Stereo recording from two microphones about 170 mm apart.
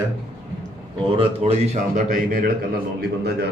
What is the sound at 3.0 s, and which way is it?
Speech, 70° right (ahead or behind).